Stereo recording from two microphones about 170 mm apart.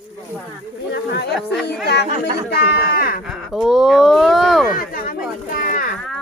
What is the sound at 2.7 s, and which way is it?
Speech, 60° left (ahead or behind).